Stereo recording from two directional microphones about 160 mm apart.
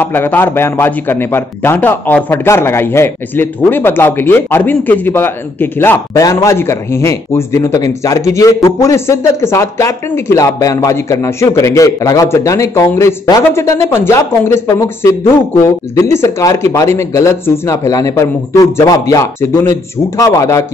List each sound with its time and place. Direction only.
0.0 s a man's voice: 10° left (ahead or behind)